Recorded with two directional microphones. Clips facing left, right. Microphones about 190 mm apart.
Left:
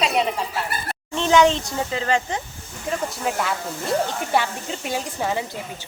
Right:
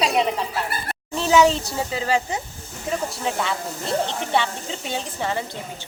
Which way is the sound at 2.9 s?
5° left (ahead or behind).